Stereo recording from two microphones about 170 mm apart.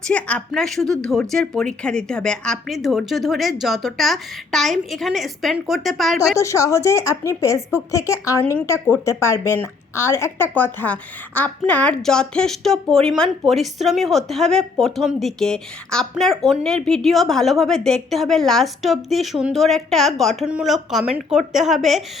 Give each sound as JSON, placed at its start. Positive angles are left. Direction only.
{"t": 0.1, "sound": "a woman's voice", "side_deg": 5}
{"t": 6.3, "sound": "a woman's voice", "side_deg": 20}